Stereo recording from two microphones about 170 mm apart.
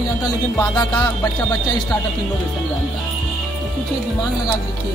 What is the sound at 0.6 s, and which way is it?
Music, 25° left (ahead or behind).